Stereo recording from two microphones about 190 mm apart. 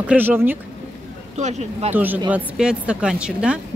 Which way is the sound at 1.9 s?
10° right (ahead or behind).